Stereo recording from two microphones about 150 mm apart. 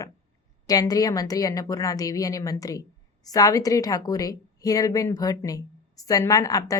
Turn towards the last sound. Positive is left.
turn(degrees=25)  # may be behind; listen again after turning